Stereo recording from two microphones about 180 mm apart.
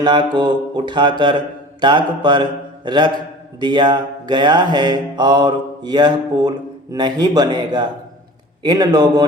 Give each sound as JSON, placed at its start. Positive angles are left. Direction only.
{"t": 0.0, "sound": "mantra", "side_deg": -25}